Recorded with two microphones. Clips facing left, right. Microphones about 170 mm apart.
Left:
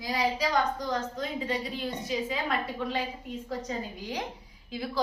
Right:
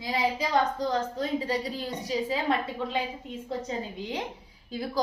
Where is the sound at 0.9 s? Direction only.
35° right (ahead or behind).